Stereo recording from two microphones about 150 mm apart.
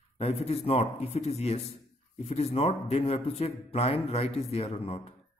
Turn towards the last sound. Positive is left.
turn(degrees=40)  # may be behind; listen again after turning